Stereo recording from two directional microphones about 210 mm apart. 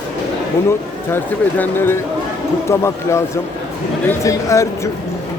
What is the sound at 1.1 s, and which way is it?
Speech, 10° left (ahead or behind).